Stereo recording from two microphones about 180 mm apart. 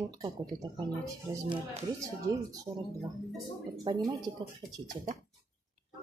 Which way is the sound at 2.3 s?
20° right (ahead or behind).